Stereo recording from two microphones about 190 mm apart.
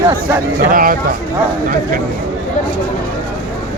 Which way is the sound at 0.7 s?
45° right (ahead or behind).